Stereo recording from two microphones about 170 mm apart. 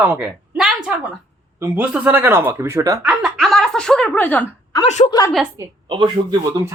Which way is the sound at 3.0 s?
Centre (ahead or behind).